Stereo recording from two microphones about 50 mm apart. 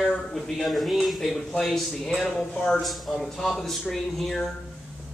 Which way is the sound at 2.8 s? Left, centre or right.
Centre.